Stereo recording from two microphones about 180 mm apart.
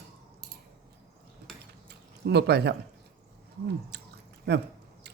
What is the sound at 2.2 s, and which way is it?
Speech, 65° right (ahead or behind).